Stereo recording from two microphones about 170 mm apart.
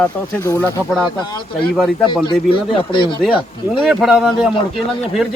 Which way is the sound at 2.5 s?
30° left (ahead or behind).